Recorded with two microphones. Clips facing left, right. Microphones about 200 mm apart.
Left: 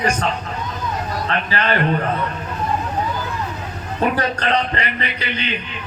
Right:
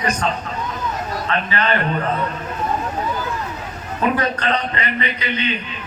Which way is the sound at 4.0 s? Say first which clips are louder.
Even; 35° left (ahead or behind).